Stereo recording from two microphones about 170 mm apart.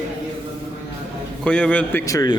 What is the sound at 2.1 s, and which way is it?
Speech, 20° left (ahead or behind).